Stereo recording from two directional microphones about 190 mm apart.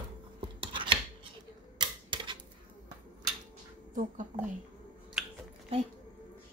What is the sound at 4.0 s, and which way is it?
Speech, 40° right (ahead or behind).